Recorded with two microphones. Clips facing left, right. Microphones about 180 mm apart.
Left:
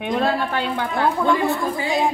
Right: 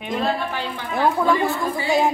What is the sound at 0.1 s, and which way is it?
Speech, 55° left (ahead or behind).